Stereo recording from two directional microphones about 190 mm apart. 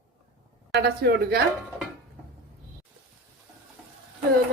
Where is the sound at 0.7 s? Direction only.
60° right (ahead or behind).